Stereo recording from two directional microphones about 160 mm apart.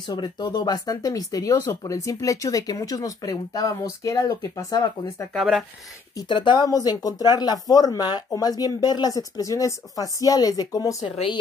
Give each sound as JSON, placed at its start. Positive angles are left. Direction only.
{"t": 0.1, "sound": "speech", "side_deg": 25}
{"t": 5.3, "sound": "speech", "side_deg": 0}
{"t": 6.1, "sound": "speech", "side_deg": 30}
{"t": 11.0, "sound": "speech", "side_deg": 35}